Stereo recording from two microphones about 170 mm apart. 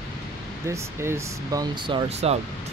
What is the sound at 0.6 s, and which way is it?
Speech, 15° right (ahead or behind).